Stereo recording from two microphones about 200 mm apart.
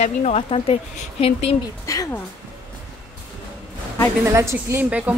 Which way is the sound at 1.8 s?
15° left (ahead or behind).